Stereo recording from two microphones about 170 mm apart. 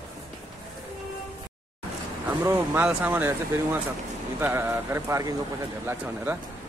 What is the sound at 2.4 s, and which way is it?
Speech, 15° right (ahead or behind).